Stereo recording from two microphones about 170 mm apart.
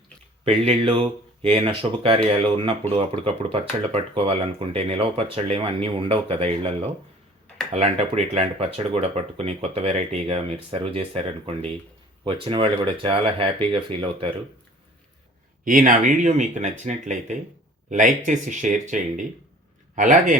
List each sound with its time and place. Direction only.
0.4 s speech: 35° right (ahead or behind)
15.6 s speech: 50° right (ahead or behind)